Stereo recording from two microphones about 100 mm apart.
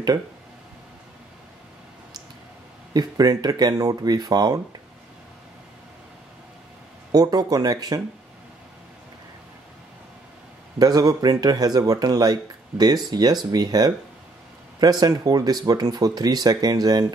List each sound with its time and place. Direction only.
2.9 s speech: 40° right (ahead or behind)
7.1 s speech: 40° right (ahead or behind)
10.8 s speech: 40° right (ahead or behind)